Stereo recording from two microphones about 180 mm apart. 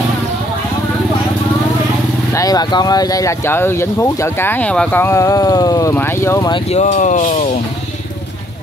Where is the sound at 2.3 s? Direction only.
20° left (ahead or behind).